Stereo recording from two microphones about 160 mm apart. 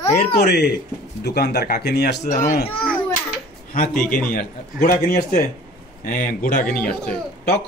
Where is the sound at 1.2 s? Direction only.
90° left.